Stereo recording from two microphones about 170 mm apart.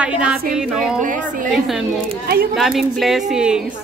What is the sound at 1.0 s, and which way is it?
Speech, 50° right (ahead or behind).